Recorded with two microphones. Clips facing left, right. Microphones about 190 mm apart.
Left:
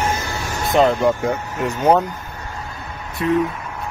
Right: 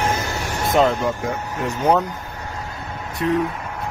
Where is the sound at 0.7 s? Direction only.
Centre (ahead or behind).